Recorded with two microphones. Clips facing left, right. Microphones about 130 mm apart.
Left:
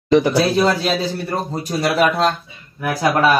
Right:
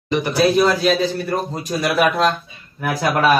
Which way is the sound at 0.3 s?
30° left (ahead or behind).